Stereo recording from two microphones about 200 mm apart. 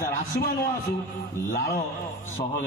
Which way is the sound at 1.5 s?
50° left (ahead or behind).